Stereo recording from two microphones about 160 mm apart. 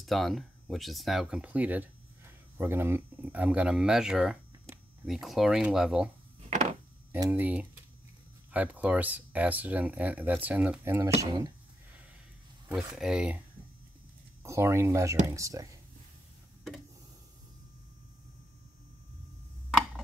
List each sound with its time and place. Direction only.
0.0 s speech: centre (ahead or behind)
6.5 s chopping: 45° right (ahead or behind)
7.1 s speech: 15° right (ahead or behind)
12.7 s speech: centre (ahead or behind)
14.4 s speech: 15° right (ahead or behind)